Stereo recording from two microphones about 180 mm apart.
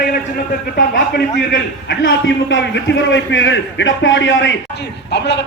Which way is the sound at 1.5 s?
80° left.